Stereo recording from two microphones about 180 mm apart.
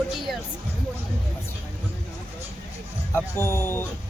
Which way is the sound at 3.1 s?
15° left (ahead or behind).